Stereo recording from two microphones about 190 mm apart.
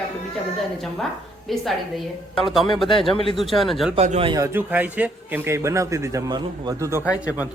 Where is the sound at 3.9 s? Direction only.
35° right (ahead or behind).